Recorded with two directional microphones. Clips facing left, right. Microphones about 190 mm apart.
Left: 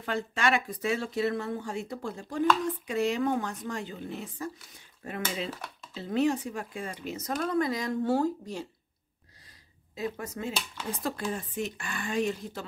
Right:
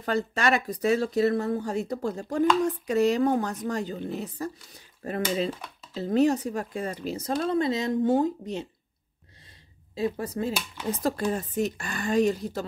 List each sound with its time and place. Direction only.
0.0 s speech: 40° right (ahead or behind); by 8.6 s 20° right (ahead or behind)
9.9 s speech: 30° right (ahead or behind)
10.5 s speech: 15° right (ahead or behind)
11.0 s speech: 40° right (ahead or behind)